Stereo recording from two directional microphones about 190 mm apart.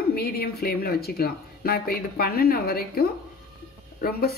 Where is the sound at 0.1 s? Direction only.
55° left (ahead or behind).